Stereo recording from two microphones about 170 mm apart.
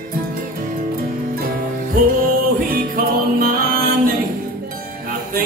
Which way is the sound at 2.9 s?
60° right (ahead or behind).